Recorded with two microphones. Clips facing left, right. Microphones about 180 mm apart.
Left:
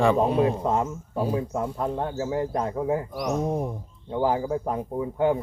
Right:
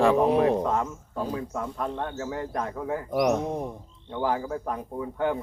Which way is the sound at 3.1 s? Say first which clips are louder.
Right 6 dB; 60° right (ahead or behind).